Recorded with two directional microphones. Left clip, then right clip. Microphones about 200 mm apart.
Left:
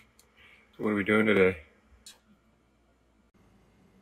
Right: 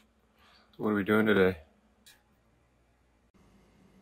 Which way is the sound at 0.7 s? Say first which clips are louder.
Left 1 dB; 5° right (ahead or behind).